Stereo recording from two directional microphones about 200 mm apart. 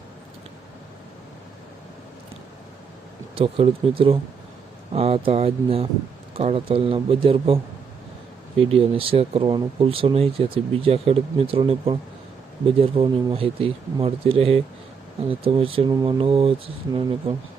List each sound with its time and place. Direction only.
3.3 s speech: 30° right (ahead or behind)